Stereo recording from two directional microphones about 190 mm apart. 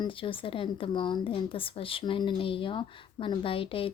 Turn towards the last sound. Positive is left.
turn(degrees=30)  # may be behind; listen again after turning